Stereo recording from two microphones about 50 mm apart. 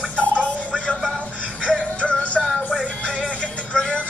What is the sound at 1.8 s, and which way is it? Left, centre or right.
Music, left.